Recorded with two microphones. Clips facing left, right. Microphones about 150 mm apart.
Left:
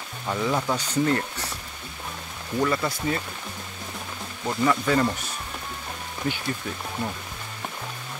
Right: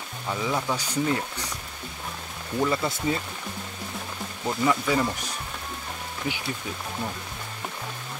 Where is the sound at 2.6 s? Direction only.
20° right (ahead or behind).